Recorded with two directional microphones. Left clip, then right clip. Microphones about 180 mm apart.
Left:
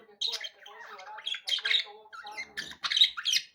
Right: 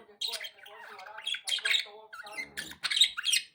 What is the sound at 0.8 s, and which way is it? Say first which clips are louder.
Squawk: even; 15° right (ahead or behind).